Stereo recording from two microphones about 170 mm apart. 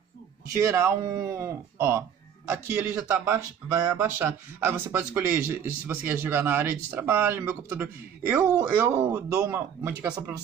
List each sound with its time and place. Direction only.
0.6 s speech: 15° right (ahead or behind)